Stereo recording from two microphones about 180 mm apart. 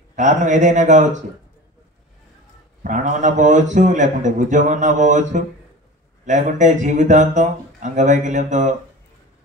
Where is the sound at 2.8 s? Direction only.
45° right (ahead or behind).